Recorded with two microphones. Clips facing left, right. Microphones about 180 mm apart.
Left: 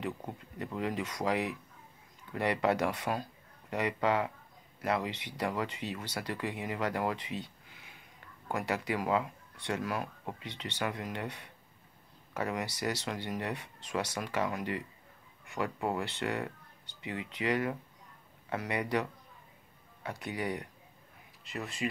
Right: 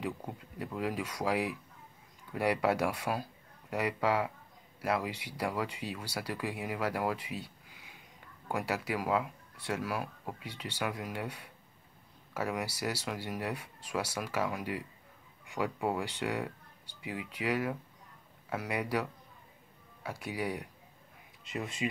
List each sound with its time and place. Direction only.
0.3 s speech: 5° right (ahead or behind)
21.5 s speech: 20° right (ahead or behind)